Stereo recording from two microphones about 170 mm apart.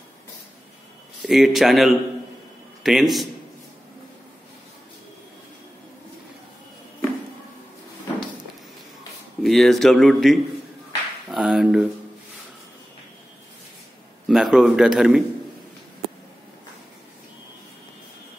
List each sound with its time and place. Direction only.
1.2 s speech: centre (ahead or behind)
9.4 s speech: centre (ahead or behind)
14.2 s speech: centre (ahead or behind)